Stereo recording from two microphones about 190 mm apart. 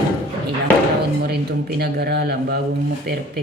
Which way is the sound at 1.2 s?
60° right (ahead or behind).